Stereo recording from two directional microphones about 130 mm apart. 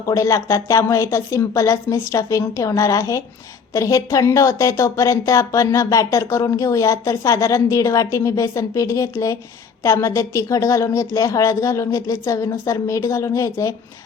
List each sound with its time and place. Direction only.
0.0 s speech: 25° left (ahead or behind)